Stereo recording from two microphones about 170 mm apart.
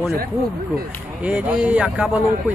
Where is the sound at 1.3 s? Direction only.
10° right (ahead or behind).